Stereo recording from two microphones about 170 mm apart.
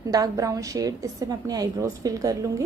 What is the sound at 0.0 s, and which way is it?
A woman's voice, 20° right (ahead or behind).